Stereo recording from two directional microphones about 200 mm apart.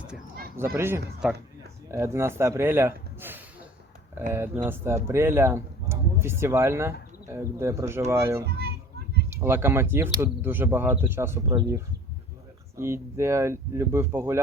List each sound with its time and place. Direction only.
0.5 s speech: 10° right (ahead or behind)
8.4 s children playing: 55° right (ahead or behind)
9.4 s speech: 10° right (ahead or behind)